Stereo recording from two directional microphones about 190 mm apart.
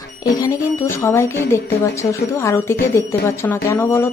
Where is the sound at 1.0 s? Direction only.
15° left (ahead or behind).